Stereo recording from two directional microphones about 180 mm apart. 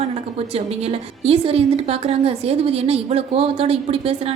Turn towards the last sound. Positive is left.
turn(degrees=-35)  # may be behind; listen again after turning